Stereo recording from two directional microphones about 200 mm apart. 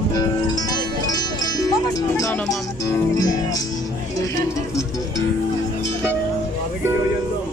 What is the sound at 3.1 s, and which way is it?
Music, 20° left (ahead or behind).